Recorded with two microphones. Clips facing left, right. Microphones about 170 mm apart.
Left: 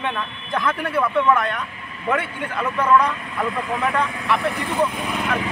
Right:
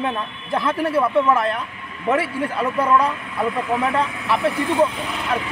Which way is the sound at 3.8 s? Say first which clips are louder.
Right 1 dB; 30° right (ahead or behind).